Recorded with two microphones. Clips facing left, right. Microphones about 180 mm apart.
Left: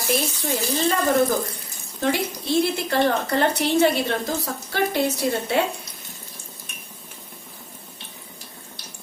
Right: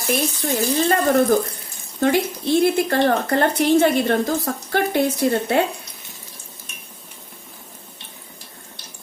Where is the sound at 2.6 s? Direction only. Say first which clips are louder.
Right 3 dB; 55° right (ahead or behind).